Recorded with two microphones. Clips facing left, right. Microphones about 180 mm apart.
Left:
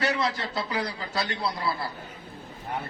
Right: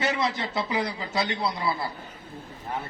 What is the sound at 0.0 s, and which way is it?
A man's voice, 20° right (ahead or behind).